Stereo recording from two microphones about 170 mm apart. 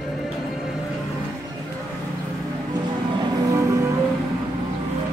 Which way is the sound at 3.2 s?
20° right (ahead or behind).